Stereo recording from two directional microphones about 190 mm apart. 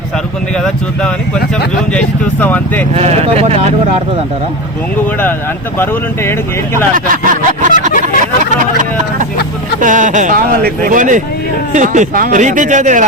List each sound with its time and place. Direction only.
1.9 s speech: 5° left (ahead or behind)
2.9 s speech: 35° right (ahead or behind)
6.9 s speech: 45° right (ahead or behind)
9.8 s speech: 40° right (ahead or behind)